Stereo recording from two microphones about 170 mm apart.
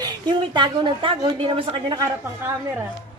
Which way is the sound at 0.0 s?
25° right (ahead or behind).